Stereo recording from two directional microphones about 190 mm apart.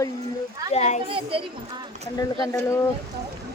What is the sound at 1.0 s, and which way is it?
Speech, 30° right (ahead or behind).